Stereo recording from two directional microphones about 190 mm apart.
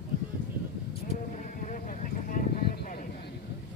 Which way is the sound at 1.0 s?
40° left (ahead or behind).